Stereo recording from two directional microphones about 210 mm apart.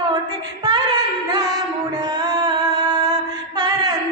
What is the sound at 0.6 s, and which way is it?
Female singing, 20° right (ahead or behind).